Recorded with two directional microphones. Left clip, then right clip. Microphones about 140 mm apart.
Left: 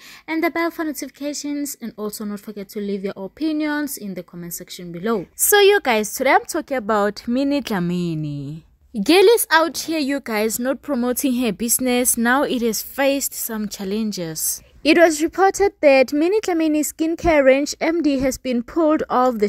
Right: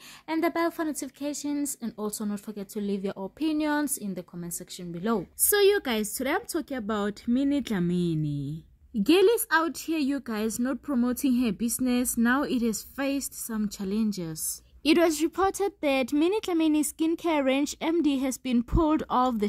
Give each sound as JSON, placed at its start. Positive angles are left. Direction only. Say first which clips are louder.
{"t": 0.3, "sound": "a woman's voice", "louder": "left 6 dB", "side_deg": 25}
{"t": 5.4, "sound": "a woman's voice", "louder": "left 9 dB", "side_deg": 40}
{"t": 14.9, "sound": "a woman's voice", "louder": "left 9 dB", "side_deg": 10}